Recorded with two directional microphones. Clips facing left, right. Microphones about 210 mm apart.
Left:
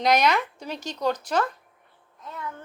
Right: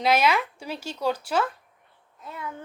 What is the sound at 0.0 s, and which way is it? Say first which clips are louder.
Speech: left 1 dB; 5° right (ahead or behind).